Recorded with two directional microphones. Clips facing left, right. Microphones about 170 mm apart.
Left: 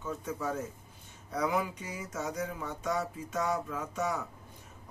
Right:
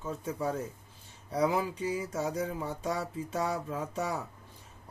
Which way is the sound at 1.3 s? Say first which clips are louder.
Right 3 dB; 30° right (ahead or behind).